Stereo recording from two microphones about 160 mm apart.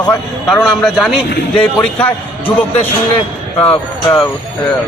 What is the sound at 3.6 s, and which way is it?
Speech, 35° left (ahead or behind).